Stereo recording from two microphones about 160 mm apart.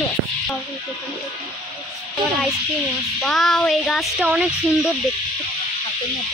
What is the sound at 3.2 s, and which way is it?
Speech, centre (ahead or behind).